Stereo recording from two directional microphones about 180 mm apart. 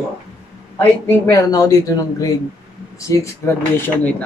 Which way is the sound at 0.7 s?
15° left (ahead or behind).